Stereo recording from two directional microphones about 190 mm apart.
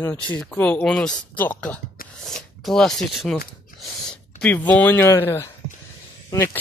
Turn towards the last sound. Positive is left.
turn(degrees=15)  # may be behind; listen again after turning